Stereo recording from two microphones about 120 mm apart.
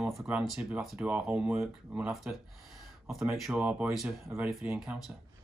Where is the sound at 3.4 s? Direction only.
5° right (ahead or behind).